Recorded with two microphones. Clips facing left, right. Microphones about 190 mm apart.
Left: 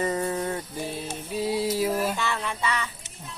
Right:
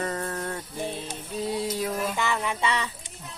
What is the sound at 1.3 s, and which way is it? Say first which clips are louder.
Music: left 3 dB; 5° left (ahead or behind).